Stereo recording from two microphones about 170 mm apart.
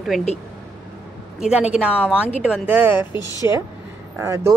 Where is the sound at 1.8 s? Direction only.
5° right (ahead or behind).